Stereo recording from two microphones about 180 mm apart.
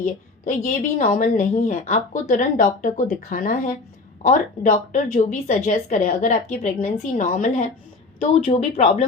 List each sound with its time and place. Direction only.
0.0 s a woman's voice: 50° left (ahead or behind)
8.2 s speech: 35° left (ahead or behind)